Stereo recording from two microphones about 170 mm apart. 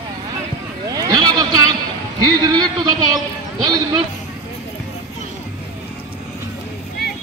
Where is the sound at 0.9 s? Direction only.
20° right (ahead or behind).